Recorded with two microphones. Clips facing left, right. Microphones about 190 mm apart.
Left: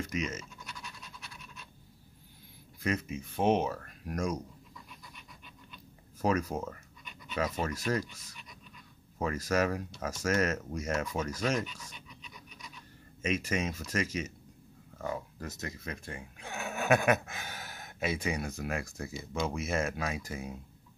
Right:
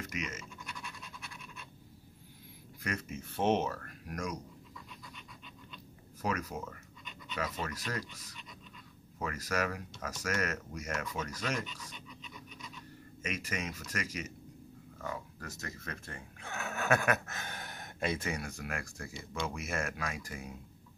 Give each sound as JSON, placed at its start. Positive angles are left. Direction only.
{"t": 0.1, "sound": "speech", "side_deg": 30}
{"t": 2.8, "sound": "speech", "side_deg": 20}
{"t": 4.1, "sound": "speech", "side_deg": 25}
{"t": 6.2, "sound": "speech", "side_deg": 30}
{"t": 9.2, "sound": "speech", "side_deg": 30}
{"t": 13.2, "sound": "speech", "side_deg": 25}